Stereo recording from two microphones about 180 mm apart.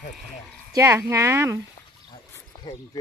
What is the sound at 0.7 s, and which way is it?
Speech, 15° right (ahead or behind).